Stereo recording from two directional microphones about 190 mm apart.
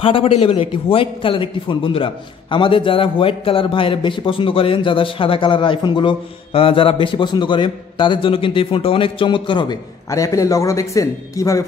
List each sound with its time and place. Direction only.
0.0 s a man's voice: 30° left (ahead or behind)